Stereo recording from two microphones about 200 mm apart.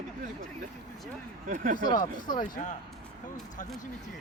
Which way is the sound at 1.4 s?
40° right (ahead or behind).